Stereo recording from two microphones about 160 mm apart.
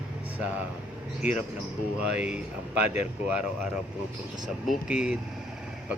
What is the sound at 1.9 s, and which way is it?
Speech, 5° right (ahead or behind).